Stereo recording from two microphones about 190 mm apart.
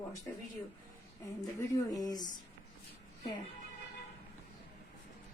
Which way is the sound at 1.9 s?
20° left (ahead or behind).